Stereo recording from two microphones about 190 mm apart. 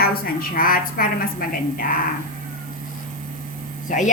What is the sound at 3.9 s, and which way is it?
Speech, 40° left (ahead or behind).